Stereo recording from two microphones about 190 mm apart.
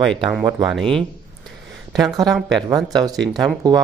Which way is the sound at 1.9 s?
20° right (ahead or behind).